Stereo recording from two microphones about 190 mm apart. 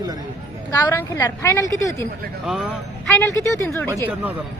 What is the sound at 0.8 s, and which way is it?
A woman's voice, 15° left (ahead or behind).